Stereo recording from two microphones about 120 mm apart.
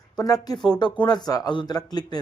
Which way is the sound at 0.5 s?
30° left (ahead or behind).